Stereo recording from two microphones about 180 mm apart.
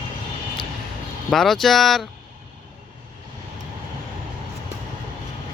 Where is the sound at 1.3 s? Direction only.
Centre (ahead or behind).